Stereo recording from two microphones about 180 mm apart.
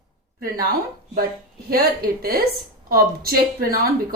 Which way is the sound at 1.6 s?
55° right (ahead or behind).